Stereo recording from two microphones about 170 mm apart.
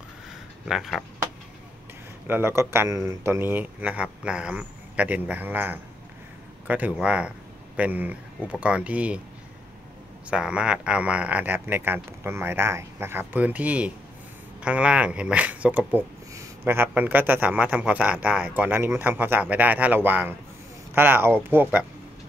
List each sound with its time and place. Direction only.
0.7 s speech: centre (ahead or behind)
2.2 s speech: 15° right (ahead or behind)
10.3 s speech: 5° right (ahead or behind)